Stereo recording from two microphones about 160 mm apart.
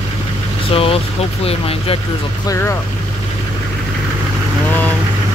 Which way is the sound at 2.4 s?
20° left (ahead or behind).